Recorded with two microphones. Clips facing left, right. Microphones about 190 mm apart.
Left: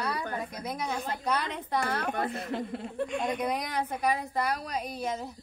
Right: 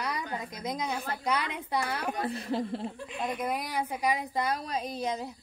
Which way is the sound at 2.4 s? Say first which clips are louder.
Right 2 dB; 30° right (ahead or behind).